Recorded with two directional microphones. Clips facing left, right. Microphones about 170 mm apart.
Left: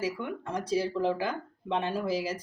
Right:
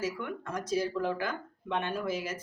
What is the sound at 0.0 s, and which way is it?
Speech, 30° left (ahead or behind).